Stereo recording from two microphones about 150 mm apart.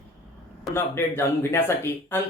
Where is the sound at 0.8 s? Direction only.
15° left (ahead or behind).